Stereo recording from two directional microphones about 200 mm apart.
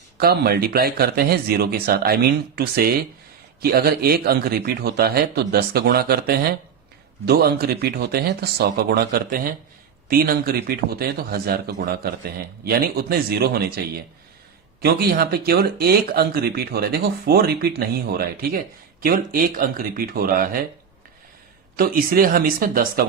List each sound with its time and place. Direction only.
0.2 s speech: 50° right (ahead or behind)
21.8 s speech: 45° right (ahead or behind)